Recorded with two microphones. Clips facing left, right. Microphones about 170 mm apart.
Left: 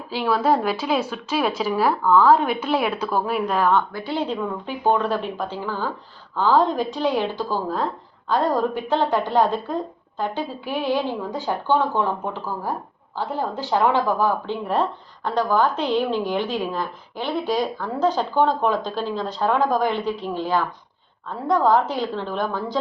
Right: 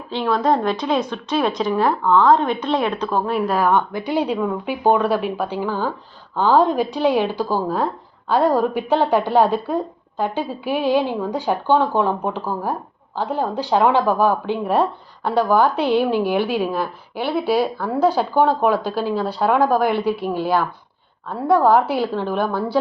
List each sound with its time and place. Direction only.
0.1 s speech: 5° left (ahead or behind)
3.7 s a woman's voice: 15° right (ahead or behind)